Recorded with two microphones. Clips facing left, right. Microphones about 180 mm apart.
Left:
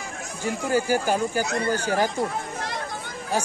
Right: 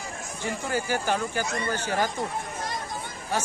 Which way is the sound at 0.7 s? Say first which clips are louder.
Left 6 dB; 40° left (ahead or behind).